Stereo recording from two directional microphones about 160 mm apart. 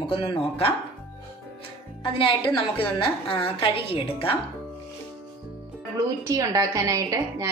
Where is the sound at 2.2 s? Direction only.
30° left (ahead or behind).